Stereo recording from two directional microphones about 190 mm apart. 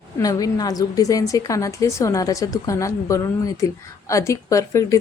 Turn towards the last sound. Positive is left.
turn(degrees=15)  # may be behind; listen again after turning